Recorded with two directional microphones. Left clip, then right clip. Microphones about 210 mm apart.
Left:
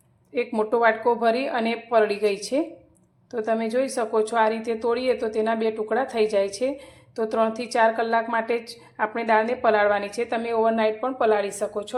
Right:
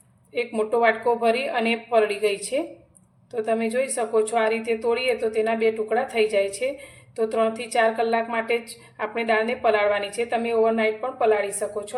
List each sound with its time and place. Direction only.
0.3 s a woman's voice: 25° left (ahead or behind)